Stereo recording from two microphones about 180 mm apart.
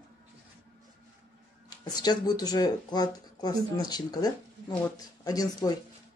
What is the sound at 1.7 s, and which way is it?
Speech, 20° left (ahead or behind).